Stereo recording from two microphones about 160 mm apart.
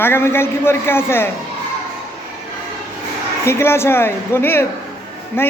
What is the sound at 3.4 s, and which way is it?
A man's voice, 15° left (ahead or behind).